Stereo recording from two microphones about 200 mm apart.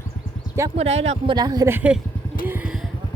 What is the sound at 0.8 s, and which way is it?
Speech, 30° right (ahead or behind).